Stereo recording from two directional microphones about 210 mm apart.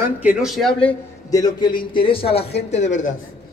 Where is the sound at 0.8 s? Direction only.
20° left (ahead or behind); by 3.1 s 35° left (ahead or behind).